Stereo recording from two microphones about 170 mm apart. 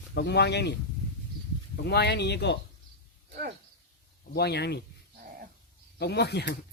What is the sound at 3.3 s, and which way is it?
Speech, 70° right (ahead or behind).